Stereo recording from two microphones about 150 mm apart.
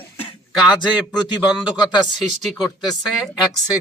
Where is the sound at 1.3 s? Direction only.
30° left (ahead or behind).